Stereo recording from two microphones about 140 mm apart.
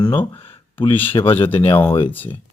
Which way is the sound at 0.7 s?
40° left (ahead or behind).